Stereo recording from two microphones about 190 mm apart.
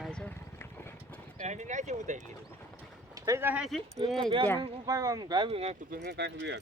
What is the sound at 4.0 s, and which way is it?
Speech, 25° right (ahead or behind).